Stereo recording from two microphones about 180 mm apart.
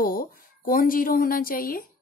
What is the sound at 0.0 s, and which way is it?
Speech, 50° left (ahead or behind).